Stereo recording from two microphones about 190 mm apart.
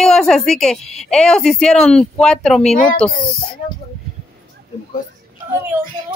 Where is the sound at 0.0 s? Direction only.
Centre (ahead or behind).